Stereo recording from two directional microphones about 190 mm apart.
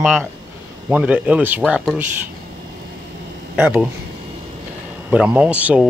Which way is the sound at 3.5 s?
10° right (ahead or behind).